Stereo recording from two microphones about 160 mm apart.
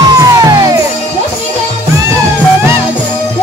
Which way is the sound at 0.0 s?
25° right (ahead or behind).